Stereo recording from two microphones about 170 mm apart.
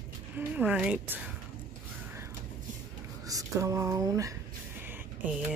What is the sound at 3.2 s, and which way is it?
Speech, 20° right (ahead or behind).